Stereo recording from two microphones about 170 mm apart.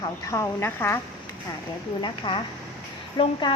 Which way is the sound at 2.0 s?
25° left (ahead or behind).